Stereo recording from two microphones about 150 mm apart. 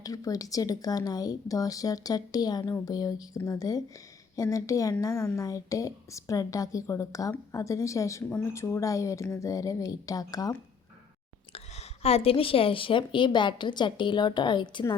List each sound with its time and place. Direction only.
0.0 s a woman's voice: 25° left (ahead or behind)
11.5 s a woman's voice: 45° left (ahead or behind)